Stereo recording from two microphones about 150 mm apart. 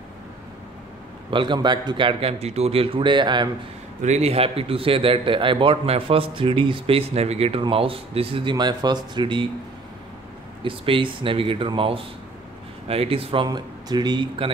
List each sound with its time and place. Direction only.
1.3 s a man's voice: 30° right (ahead or behind)
4.0 s a man's voice: 45° right (ahead or behind)
10.6 s a man's voice: 35° right (ahead or behind)